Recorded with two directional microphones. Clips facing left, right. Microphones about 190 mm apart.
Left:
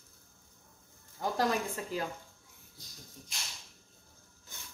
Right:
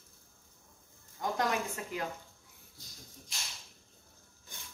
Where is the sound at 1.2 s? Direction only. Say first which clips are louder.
Left 2 dB; 35° left (ahead or behind).